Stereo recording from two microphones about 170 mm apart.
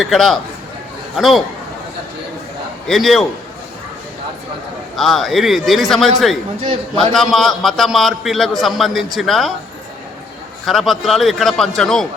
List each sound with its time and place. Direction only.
0.0 s a man's voice: centre (ahead or behind)
2.8 s a man's voice: centre (ahead or behind)
4.9 s a man's voice: centre (ahead or behind)
7.1 s a man's voice: centre (ahead or behind)
10.7 s a man's voice: centre (ahead or behind)